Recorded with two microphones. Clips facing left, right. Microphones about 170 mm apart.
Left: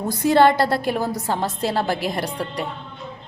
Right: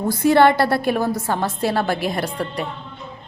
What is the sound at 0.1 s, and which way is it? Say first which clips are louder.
A woman's voice: right 1 dB; 15° left (ahead or behind).